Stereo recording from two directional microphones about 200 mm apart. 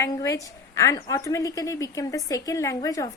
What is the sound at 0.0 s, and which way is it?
A woman's voice, 15° left (ahead or behind).